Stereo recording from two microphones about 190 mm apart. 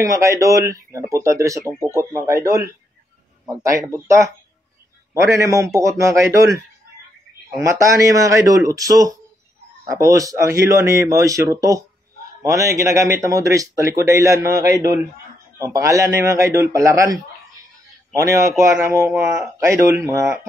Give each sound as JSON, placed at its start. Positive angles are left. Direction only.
{"t": 0.0, "sound": "a man's voice", "side_deg": -15}
{"t": 7.6, "sound": "a man's voice", "side_deg": -15}